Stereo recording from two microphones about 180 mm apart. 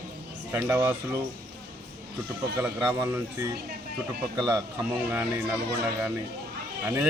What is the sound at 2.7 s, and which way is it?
Speech, 20° right (ahead or behind).